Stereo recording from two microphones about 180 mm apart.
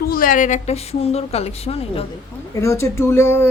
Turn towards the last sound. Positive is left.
turn(degrees=15)  # may be behind; listen again after turning